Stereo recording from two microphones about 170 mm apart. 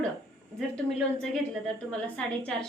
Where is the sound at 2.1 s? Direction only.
5° left (ahead or behind).